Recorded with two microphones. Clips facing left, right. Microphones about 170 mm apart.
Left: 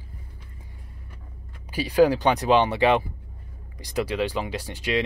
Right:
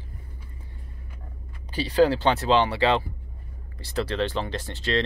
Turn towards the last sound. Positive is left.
turn(degrees=10)  # may be behind; listen again after turning